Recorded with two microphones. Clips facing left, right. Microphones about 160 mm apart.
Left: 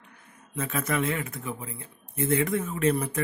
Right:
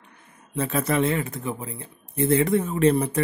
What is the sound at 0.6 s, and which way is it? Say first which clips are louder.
Speech: right 5 dB; 35° right (ahead or behind).